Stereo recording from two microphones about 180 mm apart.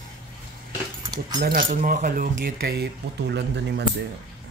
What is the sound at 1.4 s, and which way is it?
Speech, 50° right (ahead or behind).